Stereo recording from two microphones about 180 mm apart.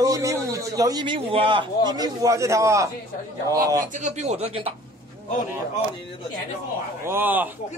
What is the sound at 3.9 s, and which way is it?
Speech, 40° right (ahead or behind).